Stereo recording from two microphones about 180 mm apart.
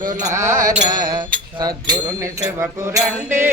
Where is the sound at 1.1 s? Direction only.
25° right (ahead or behind).